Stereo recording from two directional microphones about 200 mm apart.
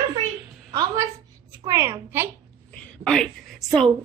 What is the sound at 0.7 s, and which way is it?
A woman's voice, 15° right (ahead or behind).